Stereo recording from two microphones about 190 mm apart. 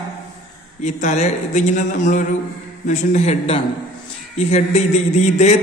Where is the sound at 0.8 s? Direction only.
40° left (ahead or behind).